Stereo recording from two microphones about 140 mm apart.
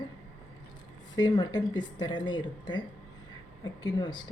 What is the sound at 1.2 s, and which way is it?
A woman's voice, 30° left (ahead or behind).